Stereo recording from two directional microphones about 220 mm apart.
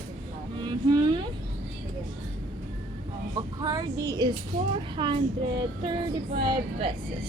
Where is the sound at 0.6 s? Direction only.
20° right (ahead or behind).